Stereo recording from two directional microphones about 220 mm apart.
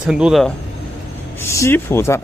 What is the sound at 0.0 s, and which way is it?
Speech, 5° right (ahead or behind).